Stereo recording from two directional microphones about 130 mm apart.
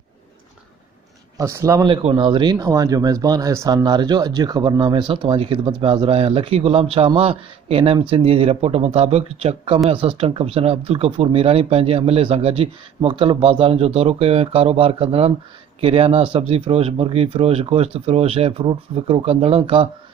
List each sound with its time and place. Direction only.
1.4 s speech: 25° right (ahead or behind)
1.9 s speech: 40° right (ahead or behind)